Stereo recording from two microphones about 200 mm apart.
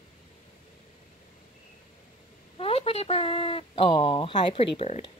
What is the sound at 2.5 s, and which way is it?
Speech, 30° left (ahead or behind).